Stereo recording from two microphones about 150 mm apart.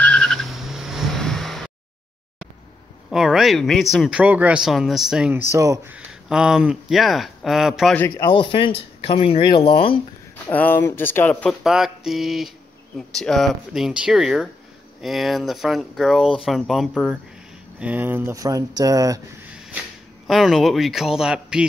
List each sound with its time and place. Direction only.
0.0 s vehicle: 5° left (ahead or behind)
3.1 s speech: 5° right (ahead or behind)
5.3 s speech: 20° right (ahead or behind)
5.9 s speech: 5° right (ahead or behind)
8.2 s speech: 30° left (ahead or behind)
10.4 s speech: 10° left (ahead or behind)
11.6 s speech: 5° right (ahead or behind)
17.7 s speech: 10° right (ahead or behind)
20.2 s speech: centre (ahead or behind)